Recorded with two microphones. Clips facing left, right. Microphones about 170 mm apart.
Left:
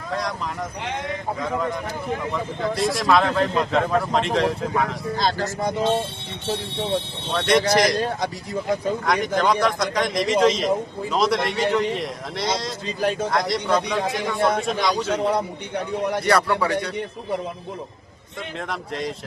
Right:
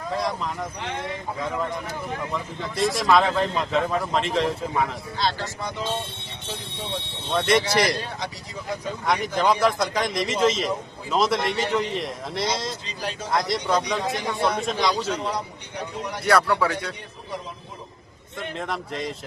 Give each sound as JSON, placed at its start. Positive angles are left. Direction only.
{"t": 0.1, "sound": "speech", "side_deg": 0}
{"t": 2.3, "sound": "speech", "side_deg": 0}
{"t": 5.1, "sound": "speech", "side_deg": 45}
{"t": 7.3, "sound": "speech", "side_deg": 0}
{"t": 7.9, "sound": "speech", "side_deg": 45}
{"t": 9.0, "sound": "speech", "side_deg": 0}
{"t": 12.8, "sound": "speech", "side_deg": 55}
{"t": 13.5, "sound": "speech", "side_deg": 0}
{"t": 14.3, "sound": "speech", "side_deg": 50}
{"t": 14.6, "sound": "speech", "side_deg": 0}
{"t": 15.0, "sound": "a man's voice", "side_deg": 55}
{"t": 16.2, "sound": "speech", "side_deg": 0}
{"t": 18.7, "sound": "speech", "side_deg": 0}